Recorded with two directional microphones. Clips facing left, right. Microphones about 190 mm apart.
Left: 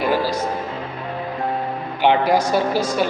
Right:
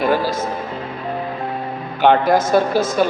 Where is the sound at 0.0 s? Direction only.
15° left (ahead or behind).